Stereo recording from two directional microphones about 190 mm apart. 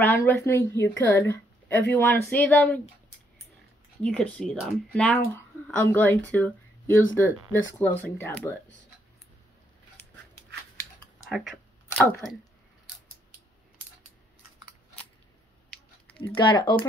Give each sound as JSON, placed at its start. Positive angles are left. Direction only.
{"t": 0.0, "sound": "speech", "side_deg": 10}
{"t": 4.0, "sound": "speech", "side_deg": 5}
{"t": 11.2, "sound": "speech", "side_deg": 0}
{"t": 16.2, "sound": "speech", "side_deg": 25}